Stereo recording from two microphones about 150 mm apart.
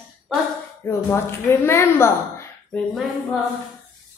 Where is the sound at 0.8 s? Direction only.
15° left (ahead or behind).